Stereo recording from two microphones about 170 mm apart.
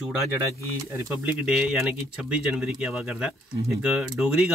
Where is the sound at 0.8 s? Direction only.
15° right (ahead or behind).